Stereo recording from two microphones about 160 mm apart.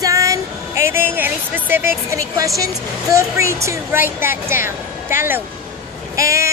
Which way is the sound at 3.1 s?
15° right (ahead or behind).